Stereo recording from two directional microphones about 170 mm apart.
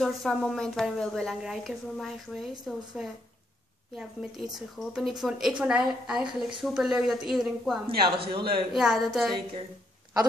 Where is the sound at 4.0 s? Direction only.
5° right (ahead or behind).